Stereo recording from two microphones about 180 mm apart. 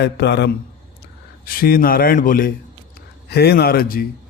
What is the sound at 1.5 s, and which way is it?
A man's voice, 55° left (ahead or behind).